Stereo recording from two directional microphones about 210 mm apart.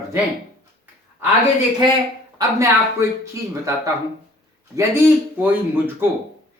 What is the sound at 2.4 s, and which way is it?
Speech, 15° right (ahead or behind).